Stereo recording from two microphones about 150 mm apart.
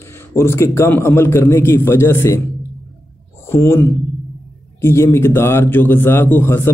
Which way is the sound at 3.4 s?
15° left (ahead or behind).